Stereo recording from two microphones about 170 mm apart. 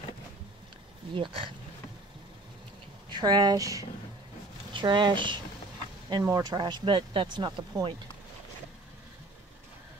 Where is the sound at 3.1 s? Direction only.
25° right (ahead or behind).